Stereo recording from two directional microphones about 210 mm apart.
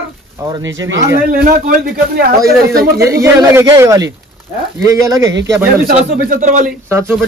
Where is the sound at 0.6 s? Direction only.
65° right (ahead or behind).